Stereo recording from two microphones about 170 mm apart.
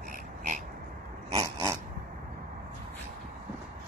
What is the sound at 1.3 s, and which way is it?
Dog, 20° right (ahead or behind).